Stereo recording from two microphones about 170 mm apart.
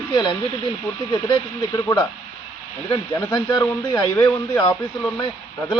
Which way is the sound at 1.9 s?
25° left (ahead or behind).